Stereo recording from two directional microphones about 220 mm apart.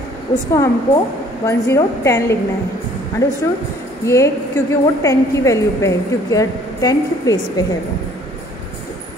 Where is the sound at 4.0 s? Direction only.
15° left (ahead or behind).